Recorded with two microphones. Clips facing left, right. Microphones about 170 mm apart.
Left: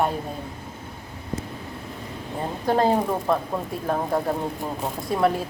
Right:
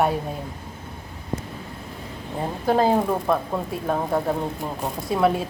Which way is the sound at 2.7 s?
Centre (ahead or behind).